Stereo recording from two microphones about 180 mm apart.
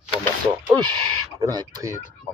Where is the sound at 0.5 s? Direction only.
25° right (ahead or behind).